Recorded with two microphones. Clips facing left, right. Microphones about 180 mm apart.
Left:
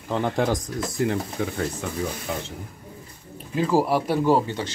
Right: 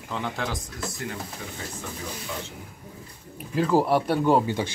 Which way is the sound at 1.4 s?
85° left.